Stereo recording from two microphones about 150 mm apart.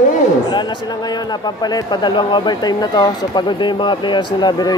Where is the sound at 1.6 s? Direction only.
30° left (ahead or behind).